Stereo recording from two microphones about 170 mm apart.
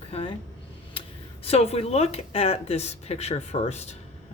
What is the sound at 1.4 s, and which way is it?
Speech, 35° left (ahead or behind).